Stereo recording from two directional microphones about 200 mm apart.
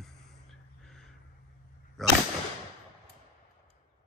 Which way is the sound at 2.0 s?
Centre (ahead or behind).